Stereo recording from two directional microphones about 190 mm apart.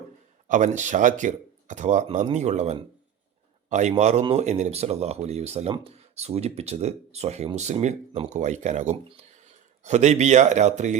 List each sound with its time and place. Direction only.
0.4 s speech: 40° right (ahead or behind)